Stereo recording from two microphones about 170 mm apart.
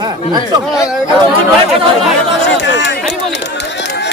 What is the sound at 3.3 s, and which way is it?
Run, 90° left.